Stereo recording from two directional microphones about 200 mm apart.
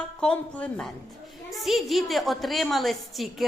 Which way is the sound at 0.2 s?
5° left (ahead or behind).